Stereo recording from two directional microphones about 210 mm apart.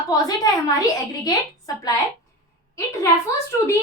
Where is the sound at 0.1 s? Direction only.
20° left (ahead or behind).